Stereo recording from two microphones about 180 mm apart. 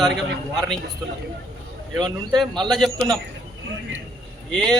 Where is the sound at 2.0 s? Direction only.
25° right (ahead or behind).